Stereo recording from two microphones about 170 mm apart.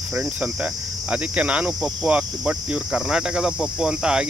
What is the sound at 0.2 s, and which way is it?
Cricket, 5° right (ahead or behind).